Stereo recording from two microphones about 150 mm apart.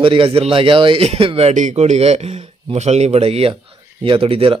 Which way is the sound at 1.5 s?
55° right (ahead or behind).